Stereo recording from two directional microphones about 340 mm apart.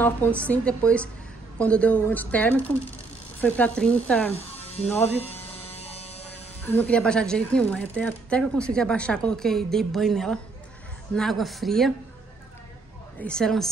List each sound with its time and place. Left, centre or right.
0.0 s speech: centre
4.3 s electric shaver: centre
4.8 s speech: centre
5.3 s a sound: centre
6.7 s speech: centre
13.2 s speech: centre